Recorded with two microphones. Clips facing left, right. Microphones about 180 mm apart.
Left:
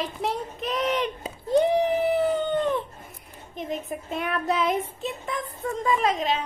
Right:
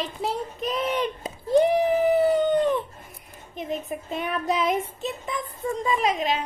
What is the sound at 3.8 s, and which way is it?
Speech, 20° right (ahead or behind).